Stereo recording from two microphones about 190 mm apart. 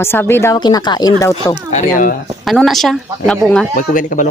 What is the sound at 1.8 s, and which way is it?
Speech, 45° left (ahead or behind).